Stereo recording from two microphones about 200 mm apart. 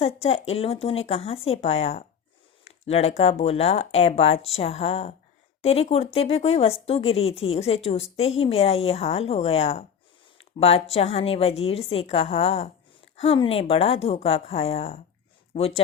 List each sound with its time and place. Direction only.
0.0 s speech: 30° left (ahead or behind)